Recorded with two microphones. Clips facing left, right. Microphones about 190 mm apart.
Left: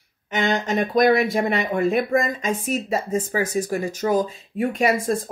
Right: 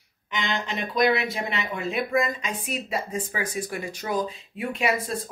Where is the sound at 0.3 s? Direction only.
45° left (ahead or behind).